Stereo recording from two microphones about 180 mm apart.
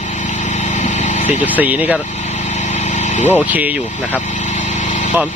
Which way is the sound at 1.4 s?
10° right (ahead or behind).